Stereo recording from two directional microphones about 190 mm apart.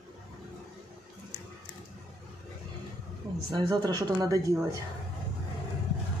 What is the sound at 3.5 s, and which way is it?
Speech, 20° right (ahead or behind).